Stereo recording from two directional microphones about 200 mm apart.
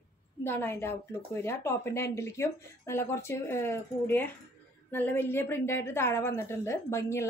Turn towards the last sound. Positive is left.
turn(degrees=15)  # may be behind; listen again after turning